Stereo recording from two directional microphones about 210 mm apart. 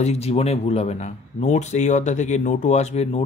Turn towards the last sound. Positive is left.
turn(degrees=30)  # may be behind; listen again after turning